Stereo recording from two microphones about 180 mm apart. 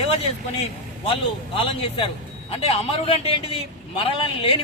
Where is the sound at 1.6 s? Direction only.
30° left (ahead or behind).